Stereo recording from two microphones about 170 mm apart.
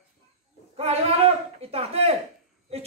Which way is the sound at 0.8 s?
35° right (ahead or behind).